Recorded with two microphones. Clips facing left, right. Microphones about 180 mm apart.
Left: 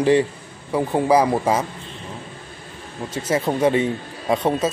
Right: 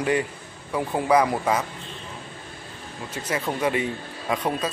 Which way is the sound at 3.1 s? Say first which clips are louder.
Left 6 dB; 30° left (ahead or behind).